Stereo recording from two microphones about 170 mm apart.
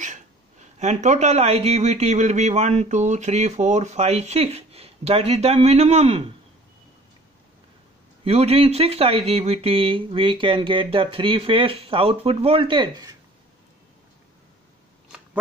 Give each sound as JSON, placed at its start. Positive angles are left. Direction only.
{"t": 0.0, "sound": "speech", "side_deg": -45}
{"t": 8.2, "sound": "speech", "side_deg": -35}